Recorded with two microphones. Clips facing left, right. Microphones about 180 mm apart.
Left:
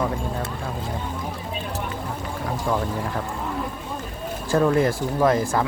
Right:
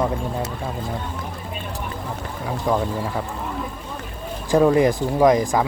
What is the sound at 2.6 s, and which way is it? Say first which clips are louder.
Speech: right 4 dB; 15° right (ahead or behind).